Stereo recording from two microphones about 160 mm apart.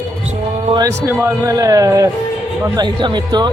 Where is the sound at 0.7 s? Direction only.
20° right (ahead or behind).